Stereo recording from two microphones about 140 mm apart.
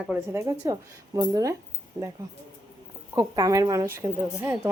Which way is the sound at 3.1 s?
25° right (ahead or behind).